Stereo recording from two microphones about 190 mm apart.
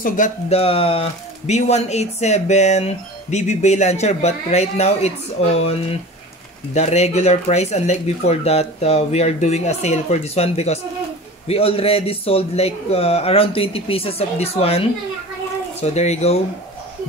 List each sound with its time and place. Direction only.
0.0 s speech: 40° left (ahead or behind)